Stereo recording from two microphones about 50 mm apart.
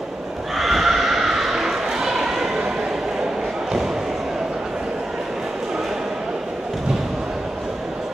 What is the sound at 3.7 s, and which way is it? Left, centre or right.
Basketball bounce, centre.